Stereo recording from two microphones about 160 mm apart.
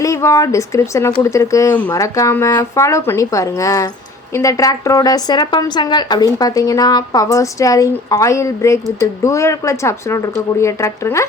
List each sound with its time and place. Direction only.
0.0 s a woman's voice: 20° left (ahead or behind)